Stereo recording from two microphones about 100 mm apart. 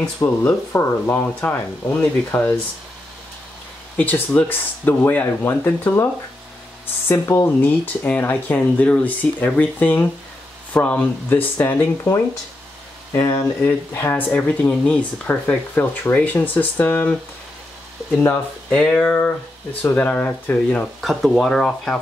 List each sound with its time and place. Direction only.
0.2 s speech: 25° left (ahead or behind)
3.9 s speech: 15° left (ahead or behind)
7.1 s speech: 25° left (ahead or behind)
13.1 s speech: 30° left (ahead or behind)
21.0 s speech: centre (ahead or behind)